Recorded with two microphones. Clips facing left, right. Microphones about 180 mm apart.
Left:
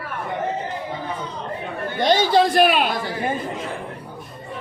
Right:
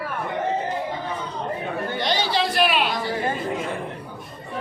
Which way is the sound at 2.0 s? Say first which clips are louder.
Left 8 dB; 45° left (ahead or behind).